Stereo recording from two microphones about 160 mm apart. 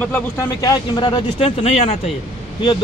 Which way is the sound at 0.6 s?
25° left (ahead or behind).